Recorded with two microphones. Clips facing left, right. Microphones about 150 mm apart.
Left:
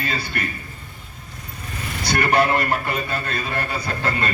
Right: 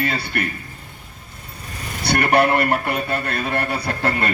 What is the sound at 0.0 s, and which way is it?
Speech, 60° right (ahead or behind).